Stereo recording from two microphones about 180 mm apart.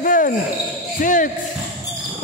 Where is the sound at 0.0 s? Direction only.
50° left (ahead or behind).